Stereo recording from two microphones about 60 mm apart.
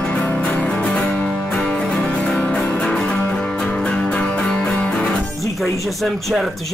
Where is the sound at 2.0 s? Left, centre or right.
Centre.